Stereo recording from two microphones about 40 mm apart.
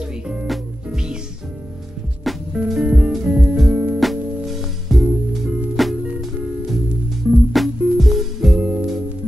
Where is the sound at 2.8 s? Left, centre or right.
Right.